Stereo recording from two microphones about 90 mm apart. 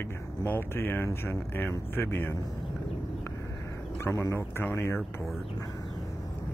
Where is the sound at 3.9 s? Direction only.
30° left (ahead or behind).